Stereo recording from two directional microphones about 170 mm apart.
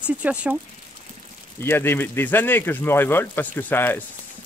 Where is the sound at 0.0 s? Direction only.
5° right (ahead or behind).